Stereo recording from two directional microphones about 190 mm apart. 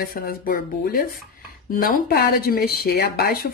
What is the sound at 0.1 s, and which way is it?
A woman's voice, 50° left (ahead or behind).